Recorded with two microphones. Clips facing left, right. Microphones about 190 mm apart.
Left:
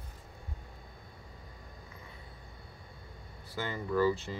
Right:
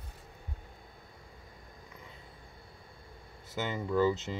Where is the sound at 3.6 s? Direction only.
20° right (ahead or behind).